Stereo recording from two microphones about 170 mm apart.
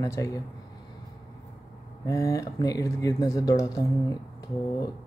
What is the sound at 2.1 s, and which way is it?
Speech, 20° left (ahead or behind).